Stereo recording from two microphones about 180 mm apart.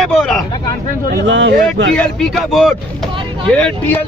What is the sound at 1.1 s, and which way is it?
Speech, 75° right (ahead or behind).